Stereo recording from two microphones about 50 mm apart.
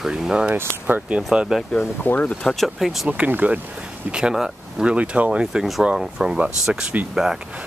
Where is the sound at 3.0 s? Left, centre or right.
Right.